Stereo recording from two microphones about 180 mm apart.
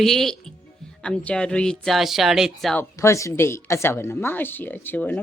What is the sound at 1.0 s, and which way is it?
Speech, 5° left (ahead or behind).